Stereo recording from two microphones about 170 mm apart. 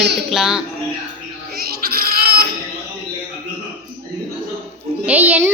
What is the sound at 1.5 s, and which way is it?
Goat, 60° right (ahead or behind).